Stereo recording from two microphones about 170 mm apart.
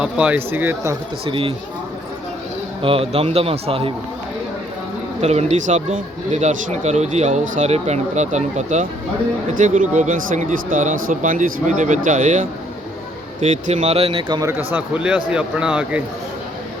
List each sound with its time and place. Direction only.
0.0 s speech: 5° right (ahead or behind)
1.2 s a man's voice: 35° right (ahead or behind)
2.8 s a man's voice: 35° right (ahead or behind)
5.2 s a man's voice: 40° right (ahead or behind)
14.7 s speech: 10° right (ahead or behind)